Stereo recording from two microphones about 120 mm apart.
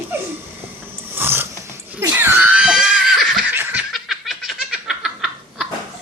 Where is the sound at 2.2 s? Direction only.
15° right (ahead or behind).